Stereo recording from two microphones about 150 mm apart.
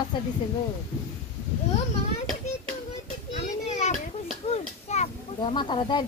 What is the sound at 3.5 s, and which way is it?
Children playing, 50° left (ahead or behind).